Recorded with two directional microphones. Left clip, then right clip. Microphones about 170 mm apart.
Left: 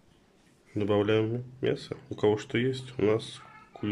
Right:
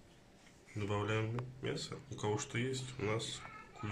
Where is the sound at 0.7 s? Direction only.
60° left (ahead or behind).